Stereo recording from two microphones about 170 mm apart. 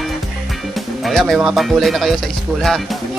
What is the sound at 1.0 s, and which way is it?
Speech, centre (ahead or behind).